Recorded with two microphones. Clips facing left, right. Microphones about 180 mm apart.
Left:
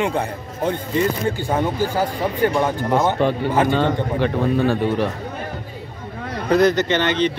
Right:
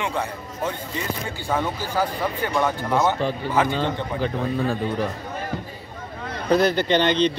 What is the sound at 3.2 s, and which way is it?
A man's voice, 60° left (ahead or behind).